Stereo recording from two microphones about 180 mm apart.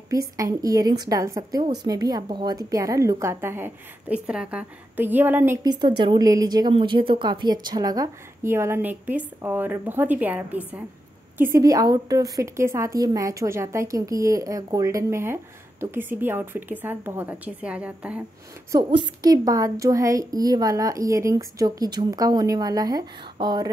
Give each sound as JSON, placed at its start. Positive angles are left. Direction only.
{"t": 0.1, "sound": "a woman's voice", "side_deg": -20}
{"t": 5.6, "sound": "a woman's voice", "side_deg": -25}
{"t": 18.7, "sound": "speech", "side_deg": -25}